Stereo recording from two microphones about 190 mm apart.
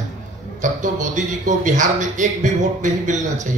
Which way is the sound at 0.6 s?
40° right (ahead or behind).